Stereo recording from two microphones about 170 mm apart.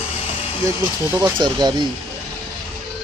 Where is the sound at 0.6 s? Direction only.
20° right (ahead or behind).